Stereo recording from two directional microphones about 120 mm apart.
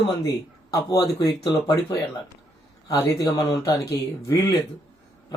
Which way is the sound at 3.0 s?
25° left (ahead or behind).